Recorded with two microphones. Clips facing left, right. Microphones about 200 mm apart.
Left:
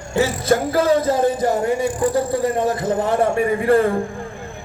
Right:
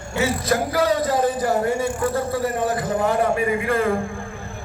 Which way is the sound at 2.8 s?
30° left (ahead or behind).